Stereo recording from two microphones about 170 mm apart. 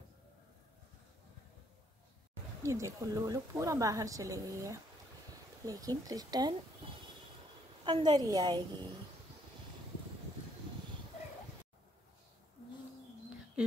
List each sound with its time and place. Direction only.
2.6 s speech: 15° right (ahead or behind)
7.8 s speech: 25° right (ahead or behind)